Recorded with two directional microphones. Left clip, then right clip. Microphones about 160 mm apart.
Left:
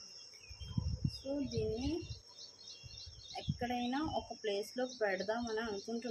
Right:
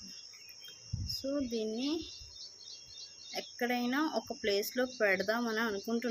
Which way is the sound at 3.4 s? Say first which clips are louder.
Right 5 dB; 60° right (ahead or behind).